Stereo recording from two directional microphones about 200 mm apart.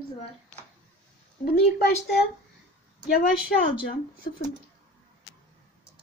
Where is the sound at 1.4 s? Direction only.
50° left (ahead or behind).